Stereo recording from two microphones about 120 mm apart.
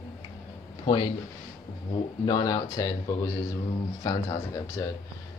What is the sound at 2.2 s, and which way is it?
Speech, 35° left (ahead or behind).